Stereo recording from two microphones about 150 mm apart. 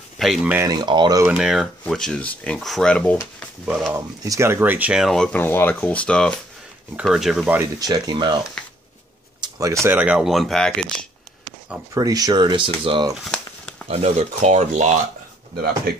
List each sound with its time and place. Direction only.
0.2 s speech: centre (ahead or behind)
0.6 s speech: 25° right (ahead or behind)
1.2 s speech: 5° right (ahead or behind)
3.2 s speech: 5° right (ahead or behind)
4.2 s speech: 20° right (ahead or behind); by 7.5 s centre (ahead or behind)
7.8 s speech: 30° right (ahead or behind)
8.6 s a sound: 5° left (ahead or behind)
9.4 s a sound: 20° right (ahead or behind)
9.8 s speech: 10° right (ahead or behind)
11.9 s speech: 25° right (ahead or behind)
13.1 s a sound: centre (ahead or behind)
13.8 s speech: 45° right (ahead or behind)
15.5 s speech: 90° right